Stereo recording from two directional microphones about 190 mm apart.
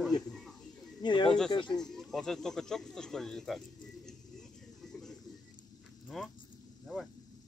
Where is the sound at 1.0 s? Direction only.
25° left (ahead or behind).